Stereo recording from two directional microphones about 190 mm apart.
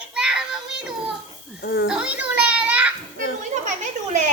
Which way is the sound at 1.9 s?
5° right (ahead or behind).